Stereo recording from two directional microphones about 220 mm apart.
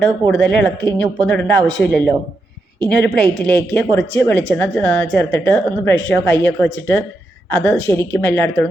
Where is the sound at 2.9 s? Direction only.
Centre (ahead or behind).